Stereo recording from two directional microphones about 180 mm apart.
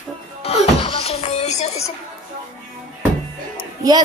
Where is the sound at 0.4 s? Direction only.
35° left (ahead or behind).